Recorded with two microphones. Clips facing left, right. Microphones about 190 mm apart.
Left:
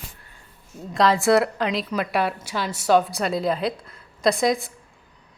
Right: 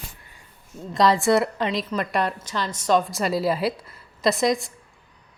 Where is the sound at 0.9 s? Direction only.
Centre (ahead or behind).